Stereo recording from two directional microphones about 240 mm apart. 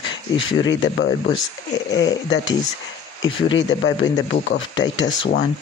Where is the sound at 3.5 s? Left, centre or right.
Left.